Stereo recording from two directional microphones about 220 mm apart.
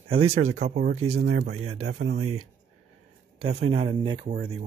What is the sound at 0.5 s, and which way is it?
Speech, 30° right (ahead or behind).